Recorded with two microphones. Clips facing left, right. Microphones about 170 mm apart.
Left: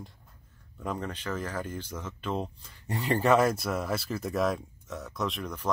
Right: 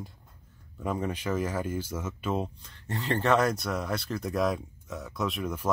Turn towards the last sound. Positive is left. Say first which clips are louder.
# right 2 dB
turn(degrees=-5)  # may be behind; listen again after turning